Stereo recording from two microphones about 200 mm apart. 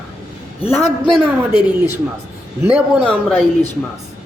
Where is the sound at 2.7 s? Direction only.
5° left (ahead or behind).